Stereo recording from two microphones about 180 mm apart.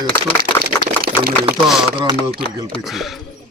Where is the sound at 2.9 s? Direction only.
Centre (ahead or behind).